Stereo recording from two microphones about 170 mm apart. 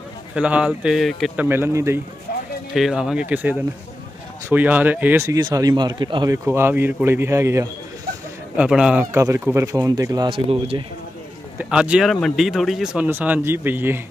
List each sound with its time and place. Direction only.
0.3 s speech: 5° right (ahead or behind)
2.7 s a man's voice: centre (ahead or behind); by 6.3 s 25° right (ahead or behind)
6.3 s speech: 15° right (ahead or behind)
8.5 s speech: 5° right (ahead or behind)
9.1 s a man's voice: 15° right (ahead or behind)
11.5 s speech: 5° right (ahead or behind)